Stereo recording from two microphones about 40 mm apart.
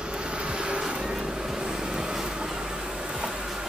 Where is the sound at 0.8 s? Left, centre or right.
Centre.